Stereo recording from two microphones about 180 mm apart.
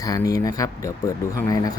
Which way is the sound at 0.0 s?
20° left (ahead or behind).